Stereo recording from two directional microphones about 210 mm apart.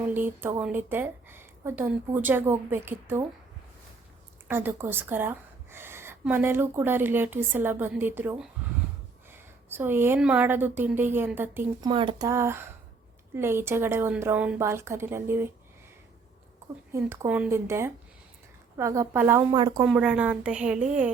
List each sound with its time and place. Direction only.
0.1 s a woman's voice: 10° right (ahead or behind)
4.4 s a woman's voice: 10° right (ahead or behind)
9.6 s a woman's voice: 10° right (ahead or behind)
11.9 s a woman's voice: 25° right (ahead or behind)
16.9 s a woman's voice: 10° right (ahead or behind)
19.8 s a woman's voice: 5° right (ahead or behind)